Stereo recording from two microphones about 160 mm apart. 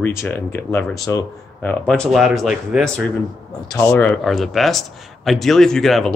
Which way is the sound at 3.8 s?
15° left (ahead or behind).